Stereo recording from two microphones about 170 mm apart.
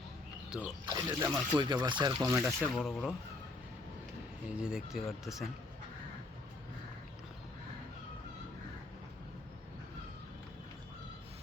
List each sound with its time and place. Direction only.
0.5 s speech: 5° right (ahead or behind)
0.9 s speech: 20° right (ahead or behind)
1.5 s speech: 25° right (ahead or behind)
2.6 s speech: centre (ahead or behind)
4.4 s speech: 5° right (ahead or behind)